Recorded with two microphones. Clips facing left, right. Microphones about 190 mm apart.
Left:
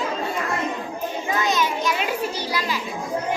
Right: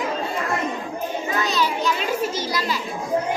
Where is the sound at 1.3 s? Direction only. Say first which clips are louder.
Left 3 dB; 35° right (ahead or behind).